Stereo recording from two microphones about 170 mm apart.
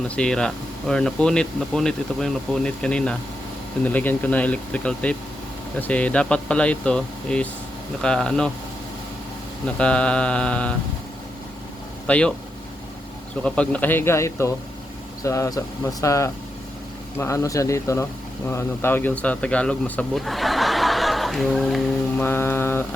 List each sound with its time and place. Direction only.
0.2 s speech: 5° left (ahead or behind)
9.6 s speech: 5° left (ahead or behind)
12.0 s speech: 5° left (ahead or behind)
13.4 s speech: 5° left (ahead or behind)
22.2 s speech: 15° left (ahead or behind)